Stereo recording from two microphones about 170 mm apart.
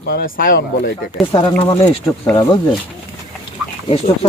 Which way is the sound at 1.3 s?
30° left (ahead or behind).